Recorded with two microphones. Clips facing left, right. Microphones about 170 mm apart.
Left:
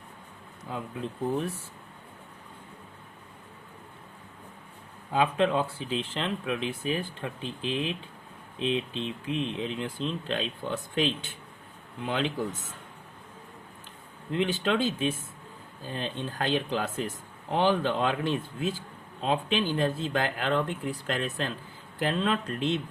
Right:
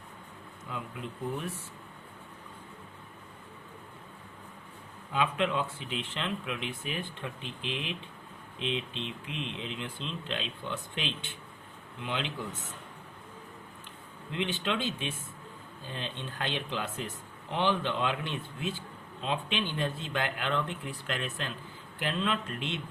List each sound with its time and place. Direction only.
0.7 s speech: 35° left (ahead or behind)
5.1 s speech: 35° left (ahead or behind)
8.9 s speech: 35° left (ahead or behind)
14.3 s speech: 40° left (ahead or behind)